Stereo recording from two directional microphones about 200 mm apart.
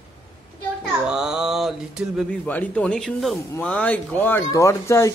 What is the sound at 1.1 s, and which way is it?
Speech, 5° right (ahead or behind).